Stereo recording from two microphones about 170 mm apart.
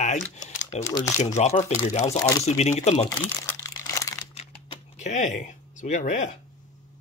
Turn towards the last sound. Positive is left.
turn(degrees=45)  # may be behind; listen again after turning